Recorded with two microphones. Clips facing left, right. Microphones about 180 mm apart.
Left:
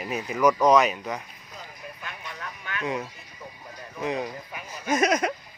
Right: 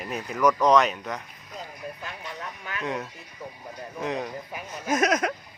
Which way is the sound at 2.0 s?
30° right (ahead or behind).